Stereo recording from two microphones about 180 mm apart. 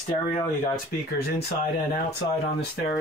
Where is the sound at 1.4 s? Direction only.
60° left (ahead or behind).